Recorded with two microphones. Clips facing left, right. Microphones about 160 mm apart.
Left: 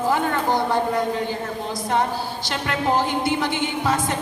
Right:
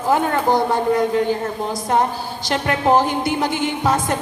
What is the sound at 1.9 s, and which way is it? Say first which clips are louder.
A woman's voice: right 3 dB; 45° right (ahead or behind).